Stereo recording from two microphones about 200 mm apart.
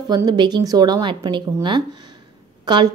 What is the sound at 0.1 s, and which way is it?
Speech, 20° right (ahead or behind).